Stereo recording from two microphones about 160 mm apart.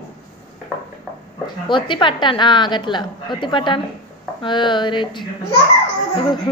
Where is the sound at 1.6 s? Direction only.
30° left (ahead or behind).